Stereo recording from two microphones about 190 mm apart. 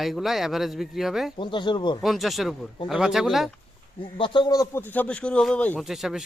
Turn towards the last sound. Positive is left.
turn(degrees=0)  # may be behind; listen again after turning